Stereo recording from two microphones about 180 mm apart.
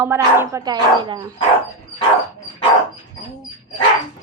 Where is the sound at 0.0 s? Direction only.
15° right (ahead or behind).